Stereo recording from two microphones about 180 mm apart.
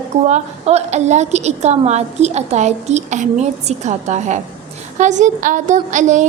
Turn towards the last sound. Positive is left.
turn(degrees=-40)  # may be behind; listen again after turning